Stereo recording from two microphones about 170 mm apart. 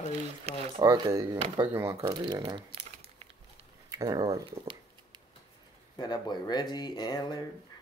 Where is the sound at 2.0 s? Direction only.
25° right (ahead or behind).